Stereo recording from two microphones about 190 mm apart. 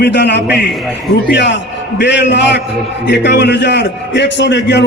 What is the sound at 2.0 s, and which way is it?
A man's voice, 65° left (ahead or behind).